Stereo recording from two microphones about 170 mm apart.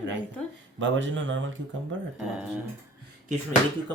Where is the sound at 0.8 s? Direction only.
90° right.